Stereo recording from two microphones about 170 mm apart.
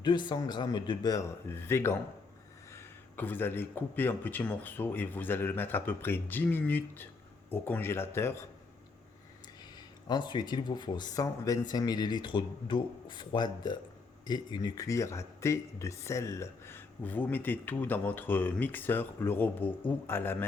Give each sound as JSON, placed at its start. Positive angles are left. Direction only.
{"t": 0.0, "sound": "speech", "side_deg": 25}
{"t": 9.7, "sound": "speech", "side_deg": 25}